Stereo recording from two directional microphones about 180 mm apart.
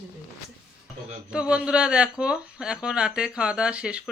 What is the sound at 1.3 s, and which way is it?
Speech, 5° right (ahead or behind).